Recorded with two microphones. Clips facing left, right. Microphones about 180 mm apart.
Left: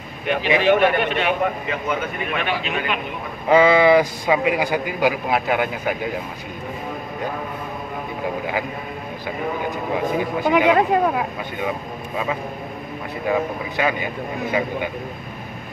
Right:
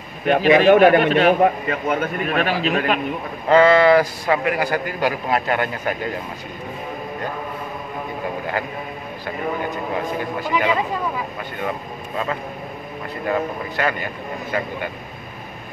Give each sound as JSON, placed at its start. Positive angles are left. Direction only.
{"t": 0.3, "sound": "a man's voice", "side_deg": -40}
{"t": 3.4, "sound": "a man's voice", "side_deg": 10}
{"t": 10.7, "sound": "speech", "side_deg": 60}
{"t": 13.3, "sound": "a man's voice", "side_deg": 10}